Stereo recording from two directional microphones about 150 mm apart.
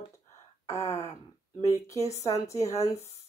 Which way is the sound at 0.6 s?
20° left (ahead or behind).